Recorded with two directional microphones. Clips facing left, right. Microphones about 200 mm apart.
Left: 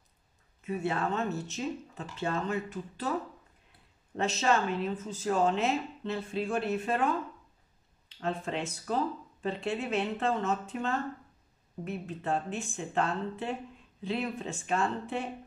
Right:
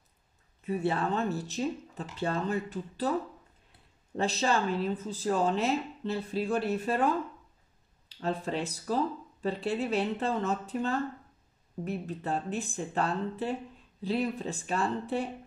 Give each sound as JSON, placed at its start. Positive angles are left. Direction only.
{"t": 0.7, "sound": "speech", "side_deg": -35}
{"t": 4.2, "sound": "speech", "side_deg": -35}
{"t": 8.2, "sound": "speech", "side_deg": -35}